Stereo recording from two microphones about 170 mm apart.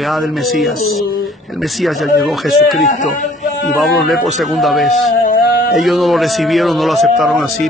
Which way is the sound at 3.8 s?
Centre (ahead or behind).